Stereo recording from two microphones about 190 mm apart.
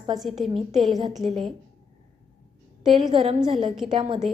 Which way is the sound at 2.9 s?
25° right (ahead or behind).